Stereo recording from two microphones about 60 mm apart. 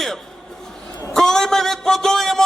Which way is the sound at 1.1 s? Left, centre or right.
Centre.